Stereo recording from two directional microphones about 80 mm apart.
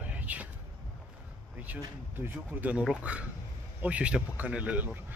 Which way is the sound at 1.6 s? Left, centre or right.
Right.